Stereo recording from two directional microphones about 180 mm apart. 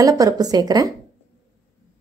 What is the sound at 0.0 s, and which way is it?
Speech, 20° right (ahead or behind).